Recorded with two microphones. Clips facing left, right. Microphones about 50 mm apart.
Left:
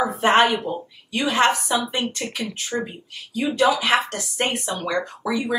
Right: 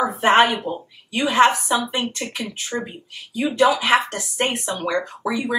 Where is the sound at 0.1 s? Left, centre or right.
Centre.